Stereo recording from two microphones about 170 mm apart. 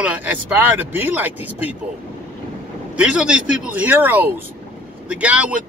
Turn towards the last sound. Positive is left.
turn(degrees=-5)  # may be behind; listen again after turning